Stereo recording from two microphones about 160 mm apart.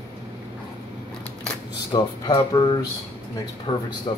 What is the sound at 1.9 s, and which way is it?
Speech, 25° left (ahead or behind).